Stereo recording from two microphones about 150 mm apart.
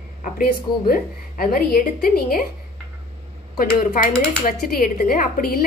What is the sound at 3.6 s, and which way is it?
A woman's voice, 65° left (ahead or behind).